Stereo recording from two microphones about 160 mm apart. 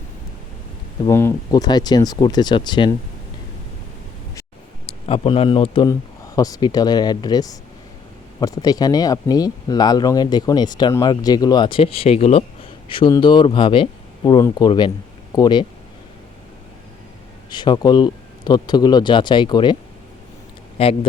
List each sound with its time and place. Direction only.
1.0 s speech: 20° left (ahead or behind)
4.9 s speech: 35° left (ahead or behind)
5.9 s speech: 20° left (ahead or behind)
17.5 s speech: 30° left (ahead or behind)
20.7 s speech: 35° left (ahead or behind)